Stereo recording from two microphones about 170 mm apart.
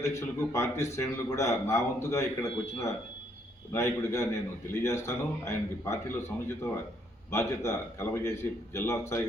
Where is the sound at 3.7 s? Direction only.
15° left (ahead or behind).